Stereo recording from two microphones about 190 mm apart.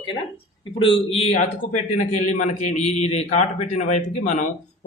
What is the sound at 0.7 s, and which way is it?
A man's voice, 30° left (ahead or behind).